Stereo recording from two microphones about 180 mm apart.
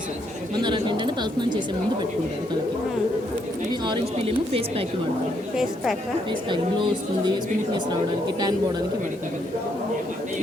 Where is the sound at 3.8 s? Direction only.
30° right (ahead or behind).